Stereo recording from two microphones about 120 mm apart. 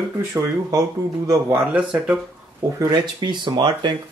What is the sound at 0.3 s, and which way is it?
Speech, 30° right (ahead or behind).